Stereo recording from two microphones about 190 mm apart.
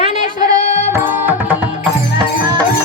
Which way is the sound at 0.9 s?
10° right (ahead or behind).